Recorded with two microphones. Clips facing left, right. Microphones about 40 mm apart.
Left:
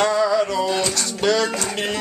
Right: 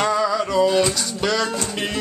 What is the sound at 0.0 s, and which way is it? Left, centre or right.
Music, centre.